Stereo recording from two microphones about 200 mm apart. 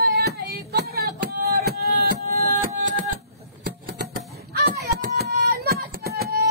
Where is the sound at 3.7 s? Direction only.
55° right (ahead or behind).